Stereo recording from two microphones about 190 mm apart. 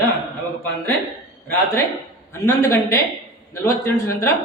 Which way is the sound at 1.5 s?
15° left (ahead or behind).